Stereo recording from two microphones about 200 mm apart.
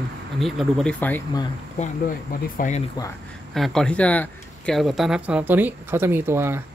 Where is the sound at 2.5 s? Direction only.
40° left (ahead or behind).